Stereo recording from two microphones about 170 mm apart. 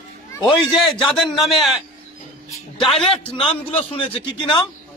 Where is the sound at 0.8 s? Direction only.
Centre (ahead or behind).